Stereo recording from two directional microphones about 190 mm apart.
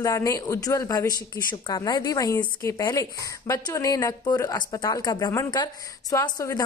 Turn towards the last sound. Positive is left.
turn(degrees=20)  # may be behind; listen again after turning